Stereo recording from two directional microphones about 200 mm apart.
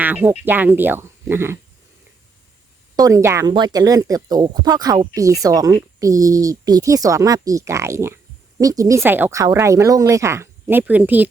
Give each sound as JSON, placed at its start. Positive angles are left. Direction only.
{"t": 0.0, "sound": "speech", "side_deg": -10}
{"t": 2.9, "sound": "speech", "side_deg": -15}